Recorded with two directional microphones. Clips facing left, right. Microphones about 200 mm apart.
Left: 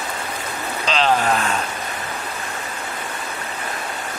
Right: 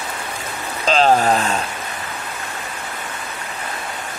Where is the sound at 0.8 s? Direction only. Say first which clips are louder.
Right 4 dB; 45° right (ahead or behind).